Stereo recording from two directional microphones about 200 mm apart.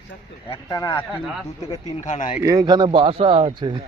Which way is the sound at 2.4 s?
20° right (ahead or behind).